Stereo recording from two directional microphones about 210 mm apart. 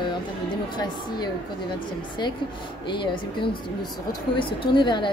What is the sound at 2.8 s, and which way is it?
Speech, 20° left (ahead or behind).